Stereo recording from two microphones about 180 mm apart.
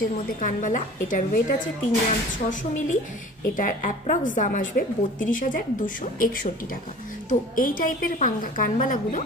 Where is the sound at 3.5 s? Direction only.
45° left (ahead or behind).